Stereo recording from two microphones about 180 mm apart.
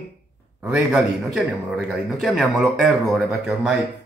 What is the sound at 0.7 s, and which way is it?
Speech, 5° right (ahead or behind).